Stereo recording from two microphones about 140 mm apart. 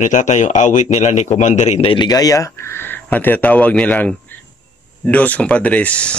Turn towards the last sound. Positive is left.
turn(degrees=10)  # may be behind; listen again after turning